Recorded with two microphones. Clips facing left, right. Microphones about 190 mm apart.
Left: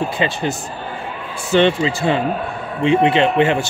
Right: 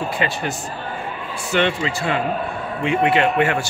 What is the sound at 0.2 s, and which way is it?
Speech, 25° left (ahead or behind).